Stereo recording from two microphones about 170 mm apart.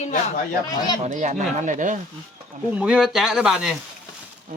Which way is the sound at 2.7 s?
5° right (ahead or behind).